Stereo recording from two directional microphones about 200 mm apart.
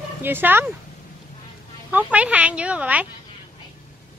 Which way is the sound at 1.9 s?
5° right (ahead or behind).